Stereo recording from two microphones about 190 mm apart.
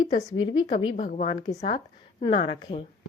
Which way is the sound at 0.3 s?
25° left (ahead or behind).